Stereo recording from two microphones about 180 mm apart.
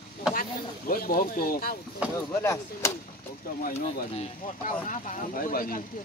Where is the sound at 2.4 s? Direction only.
15° left (ahead or behind).